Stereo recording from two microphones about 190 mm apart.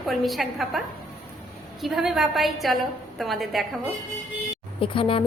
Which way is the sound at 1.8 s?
Centre (ahead or behind).